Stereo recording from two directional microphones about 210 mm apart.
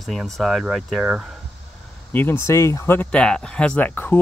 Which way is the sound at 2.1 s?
10° left (ahead or behind).